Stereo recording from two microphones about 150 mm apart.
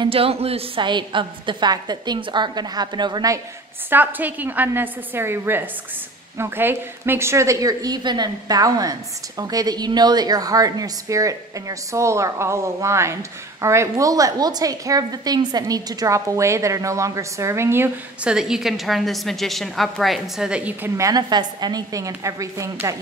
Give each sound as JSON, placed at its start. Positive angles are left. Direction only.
{"t": 0.0, "sound": "a woman's voice", "side_deg": -40}
{"t": 3.9, "sound": "a woman's voice", "side_deg": -10}
{"t": 18.3, "sound": "a woman's voice", "side_deg": -5}
{"t": 21.0, "sound": "a woman's voice", "side_deg": -25}